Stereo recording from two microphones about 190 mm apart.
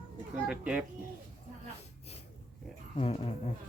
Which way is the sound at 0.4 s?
5° right (ahead or behind).